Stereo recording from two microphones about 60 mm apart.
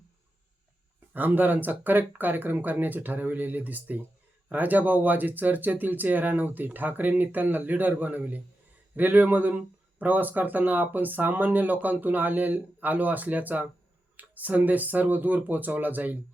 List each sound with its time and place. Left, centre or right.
1.1 s speech: right